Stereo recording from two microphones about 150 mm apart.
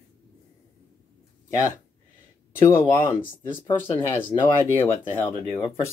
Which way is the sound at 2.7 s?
15° left (ahead or behind).